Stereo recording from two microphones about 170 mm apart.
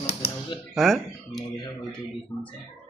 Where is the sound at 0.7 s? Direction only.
Centre (ahead or behind).